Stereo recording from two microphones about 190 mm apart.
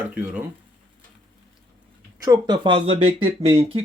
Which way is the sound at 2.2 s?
20° right (ahead or behind).